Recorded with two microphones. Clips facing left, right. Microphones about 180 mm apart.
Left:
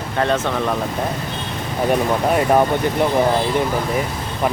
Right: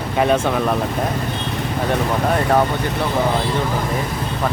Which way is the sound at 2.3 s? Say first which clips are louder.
Left 2 dB; 10° left (ahead or behind).